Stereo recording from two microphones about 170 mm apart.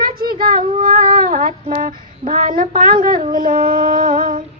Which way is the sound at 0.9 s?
55° right (ahead or behind).